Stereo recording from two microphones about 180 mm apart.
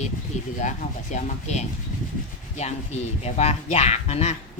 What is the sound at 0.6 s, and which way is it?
Speech, 40° left (ahead or behind).